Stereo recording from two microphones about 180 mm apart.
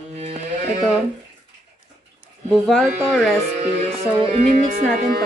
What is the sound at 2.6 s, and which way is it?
Speech, centre (ahead or behind).